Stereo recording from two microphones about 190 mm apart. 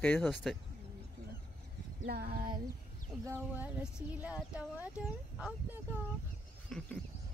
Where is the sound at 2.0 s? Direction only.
55° right (ahead or behind).